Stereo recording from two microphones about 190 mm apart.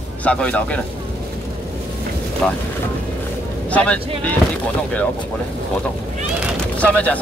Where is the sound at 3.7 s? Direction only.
5° left (ahead or behind).